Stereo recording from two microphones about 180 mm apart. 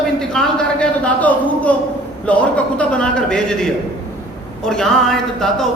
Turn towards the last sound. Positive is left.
turn(degrees=5)  # may be behind; listen again after turning